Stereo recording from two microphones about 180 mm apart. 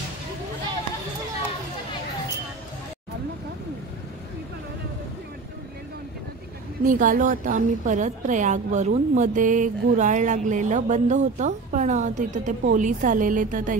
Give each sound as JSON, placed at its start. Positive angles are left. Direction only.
{"t": 6.8, "sound": "a woman's voice", "side_deg": -45}